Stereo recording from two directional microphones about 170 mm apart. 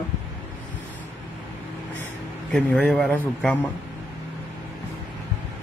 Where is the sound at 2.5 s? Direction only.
5° left (ahead or behind).